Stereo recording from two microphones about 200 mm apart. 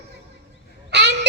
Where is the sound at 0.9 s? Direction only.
60° right (ahead or behind).